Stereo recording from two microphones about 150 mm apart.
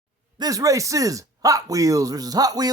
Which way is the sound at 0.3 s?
25° right (ahead or behind).